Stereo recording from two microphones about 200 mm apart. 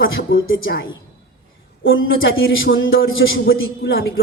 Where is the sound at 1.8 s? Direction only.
75° left (ahead or behind).